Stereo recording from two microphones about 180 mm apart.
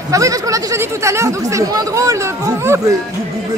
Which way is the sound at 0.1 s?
20° right (ahead or behind).